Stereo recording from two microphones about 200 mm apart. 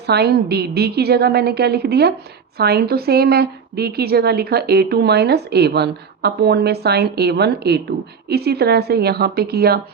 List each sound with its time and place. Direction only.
0.0 s a woman's voice: 55° right (ahead or behind)